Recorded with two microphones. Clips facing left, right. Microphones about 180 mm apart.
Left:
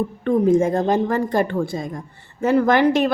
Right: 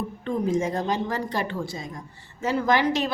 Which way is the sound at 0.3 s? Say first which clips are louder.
Left 8 dB; 55° left (ahead or behind).